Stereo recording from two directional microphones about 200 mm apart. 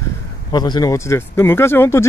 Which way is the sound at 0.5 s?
20° left (ahead or behind).